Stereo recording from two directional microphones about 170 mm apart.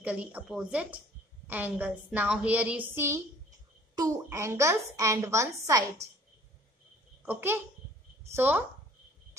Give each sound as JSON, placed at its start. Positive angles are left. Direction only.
{"t": 0.0, "sound": "a woman's voice", "side_deg": -10}
{"t": 7.2, "sound": "a woman's voice", "side_deg": -10}